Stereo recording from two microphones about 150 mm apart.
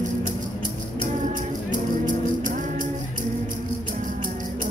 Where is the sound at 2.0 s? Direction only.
60° right (ahead or behind).